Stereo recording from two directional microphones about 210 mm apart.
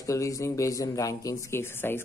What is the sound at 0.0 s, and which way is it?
Speech, 15° left (ahead or behind).